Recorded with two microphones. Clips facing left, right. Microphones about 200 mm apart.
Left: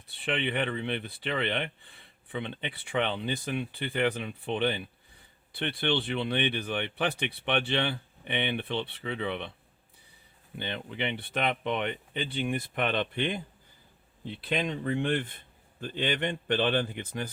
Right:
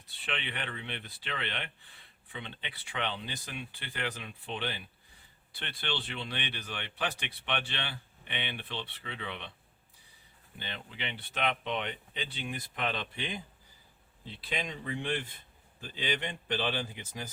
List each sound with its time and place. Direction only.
0.2 s speech: 55° left (ahead or behind)
10.9 s speech: 55° left (ahead or behind)